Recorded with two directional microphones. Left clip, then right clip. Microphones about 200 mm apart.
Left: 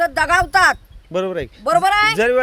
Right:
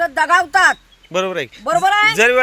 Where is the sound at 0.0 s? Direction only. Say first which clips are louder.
Right 1 dB; 20° left (ahead or behind).